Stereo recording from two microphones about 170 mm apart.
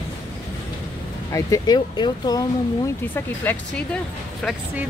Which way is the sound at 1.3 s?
20° left (ahead or behind).